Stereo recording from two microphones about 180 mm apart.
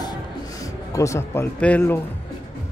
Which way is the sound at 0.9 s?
15° left (ahead or behind).